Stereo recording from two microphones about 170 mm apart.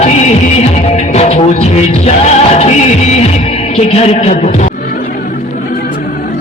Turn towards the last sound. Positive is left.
turn(degrees=40)  # may be behind; listen again after turning